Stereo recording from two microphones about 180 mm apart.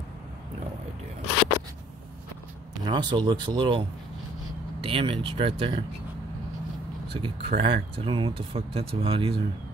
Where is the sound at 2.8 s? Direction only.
25° right (ahead or behind).